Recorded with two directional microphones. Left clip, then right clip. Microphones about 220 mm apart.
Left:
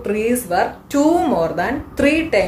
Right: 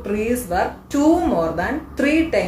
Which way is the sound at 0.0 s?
35° left (ahead or behind).